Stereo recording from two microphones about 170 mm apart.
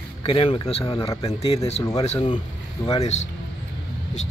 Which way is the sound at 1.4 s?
40° left (ahead or behind).